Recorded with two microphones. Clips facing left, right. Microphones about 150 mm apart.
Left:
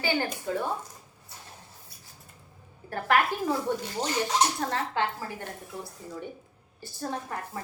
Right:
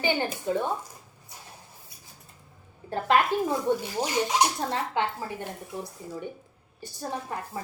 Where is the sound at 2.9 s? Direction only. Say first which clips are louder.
Right 2 dB; 20° right (ahead or behind).